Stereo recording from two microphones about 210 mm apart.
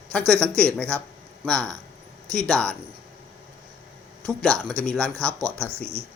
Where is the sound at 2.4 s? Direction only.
5° left (ahead or behind).